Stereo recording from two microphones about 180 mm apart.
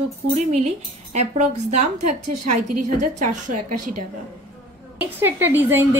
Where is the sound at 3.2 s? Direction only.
45° right (ahead or behind).